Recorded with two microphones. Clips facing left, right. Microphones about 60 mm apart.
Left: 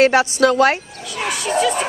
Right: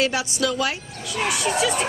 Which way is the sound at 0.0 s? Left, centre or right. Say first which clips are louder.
Left 9 dB; left.